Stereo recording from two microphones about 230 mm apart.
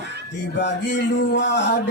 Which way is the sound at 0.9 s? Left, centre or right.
Left.